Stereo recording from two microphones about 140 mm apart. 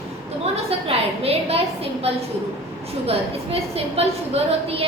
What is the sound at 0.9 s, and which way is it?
Speech, 45° right (ahead or behind).